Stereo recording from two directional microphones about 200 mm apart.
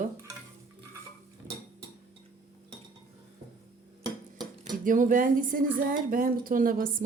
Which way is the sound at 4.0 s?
20° right (ahead or behind).